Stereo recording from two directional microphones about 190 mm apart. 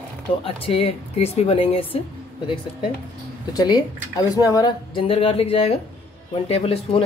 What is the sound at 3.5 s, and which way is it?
A man's voice, 20° left (ahead or behind).